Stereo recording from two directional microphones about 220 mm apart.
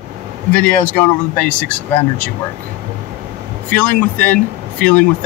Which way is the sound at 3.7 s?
5° left (ahead or behind).